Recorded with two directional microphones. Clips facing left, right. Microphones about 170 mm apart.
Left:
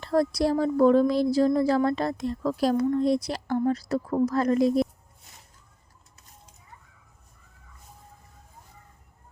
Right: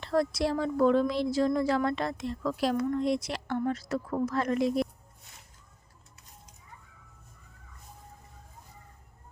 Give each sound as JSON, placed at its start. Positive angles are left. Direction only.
{"t": 0.0, "sound": "speech", "side_deg": 40}